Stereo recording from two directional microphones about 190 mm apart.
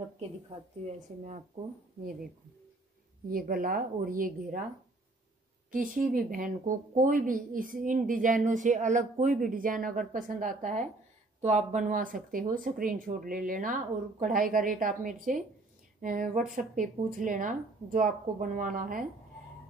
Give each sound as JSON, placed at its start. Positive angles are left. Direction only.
{"t": 0.8, "sound": "speech", "side_deg": -40}
{"t": 3.3, "sound": "speech", "side_deg": -50}
{"t": 5.7, "sound": "speech", "side_deg": -45}